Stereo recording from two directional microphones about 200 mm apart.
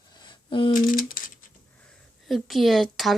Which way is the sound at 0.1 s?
20° left (ahead or behind).